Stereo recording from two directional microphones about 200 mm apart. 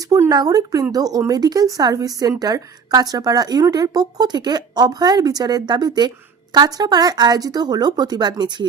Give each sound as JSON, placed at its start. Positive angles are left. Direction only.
{"t": 0.1, "sound": "a woman's voice", "side_deg": -15}